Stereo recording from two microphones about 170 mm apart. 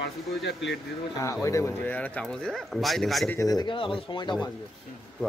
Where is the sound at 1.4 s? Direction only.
15° left (ahead or behind).